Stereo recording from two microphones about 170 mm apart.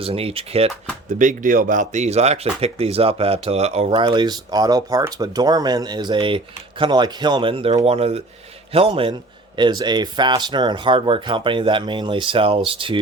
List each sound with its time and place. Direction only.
0.0 s speech: 35° right (ahead or behind)
1.0 s speech: 50° right (ahead or behind); by 13.0 s 30° right (ahead or behind)